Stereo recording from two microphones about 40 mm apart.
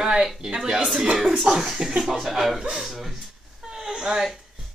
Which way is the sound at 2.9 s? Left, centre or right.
Centre.